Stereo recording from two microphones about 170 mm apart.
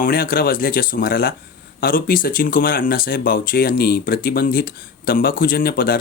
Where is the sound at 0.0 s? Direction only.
60° left (ahead or behind).